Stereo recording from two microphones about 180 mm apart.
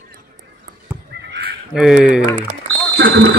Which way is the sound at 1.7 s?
5° right (ahead or behind).